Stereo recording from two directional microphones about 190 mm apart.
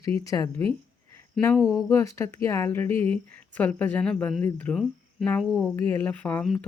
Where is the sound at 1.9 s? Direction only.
15° left (ahead or behind).